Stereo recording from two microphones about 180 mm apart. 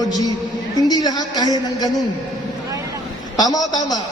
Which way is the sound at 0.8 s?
20° left (ahead or behind).